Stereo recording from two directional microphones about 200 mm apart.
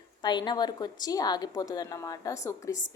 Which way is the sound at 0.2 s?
20° left (ahead or behind).